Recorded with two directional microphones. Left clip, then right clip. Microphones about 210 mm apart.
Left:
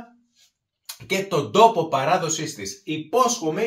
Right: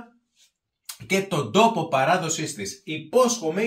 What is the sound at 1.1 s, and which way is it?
Speech, 10° right (ahead or behind).